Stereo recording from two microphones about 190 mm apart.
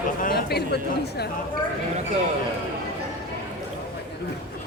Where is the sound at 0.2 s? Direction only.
55° left (ahead or behind).